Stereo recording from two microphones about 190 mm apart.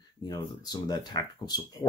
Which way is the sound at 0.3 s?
20° left (ahead or behind).